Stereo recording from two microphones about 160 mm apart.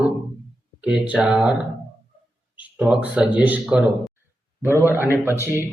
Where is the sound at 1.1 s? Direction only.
5° right (ahead or behind).